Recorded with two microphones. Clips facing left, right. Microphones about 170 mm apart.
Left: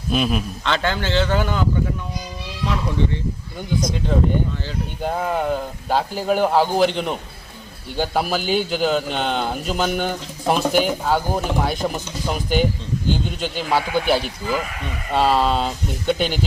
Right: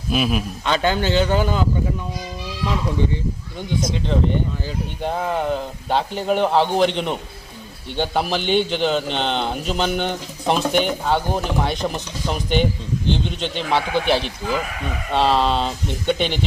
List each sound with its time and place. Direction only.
0.1 s a man's voice: 5° right (ahead or behind)
0.7 s speech: 15° right (ahead or behind)
5.0 s a man's voice: centre (ahead or behind)